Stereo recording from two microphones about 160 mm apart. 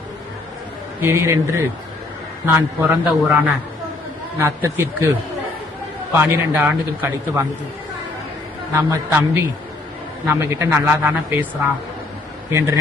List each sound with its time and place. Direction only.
1.0 s a man's voice: 15° right (ahead or behind)
6.1 s a man's voice: 10° right (ahead or behind)
8.7 s a man's voice: 15° right (ahead or behind)
12.5 s speech: 15° right (ahead or behind)